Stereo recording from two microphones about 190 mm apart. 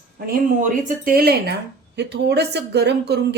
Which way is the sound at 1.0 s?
55° right (ahead or behind).